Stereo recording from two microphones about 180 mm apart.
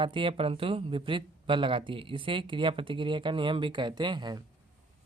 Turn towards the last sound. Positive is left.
turn(degrees=-25)  # may be behind; listen again after turning